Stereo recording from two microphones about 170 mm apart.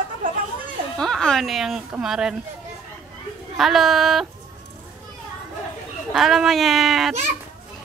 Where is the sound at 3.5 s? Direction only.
Centre (ahead or behind).